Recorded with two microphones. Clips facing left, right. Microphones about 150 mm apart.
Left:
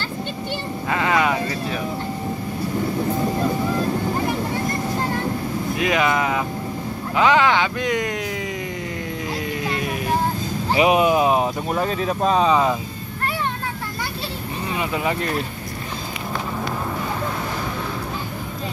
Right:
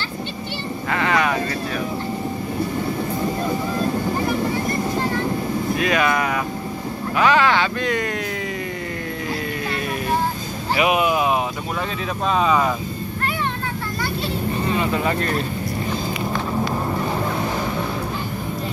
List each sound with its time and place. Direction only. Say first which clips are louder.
0.9 s vehicle: even; 20° left (ahead or behind)
5.8 s speech: left 1 dB; 20° left (ahead or behind)
10.7 s a sound: left 2 dB; 30° left (ahead or behind)
12.3 s speech: left 1 dB; 30° left (ahead or behind)
14.7 s vehicle: right 1 dB; 15° left (ahead or behind)